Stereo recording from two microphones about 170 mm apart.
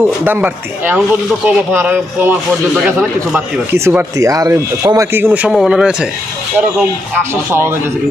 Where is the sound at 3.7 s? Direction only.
15° right (ahead or behind).